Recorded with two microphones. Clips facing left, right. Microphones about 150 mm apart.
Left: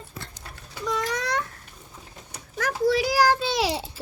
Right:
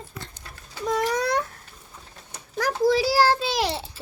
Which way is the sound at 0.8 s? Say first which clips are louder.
Right 4 dB; 30° right (ahead or behind).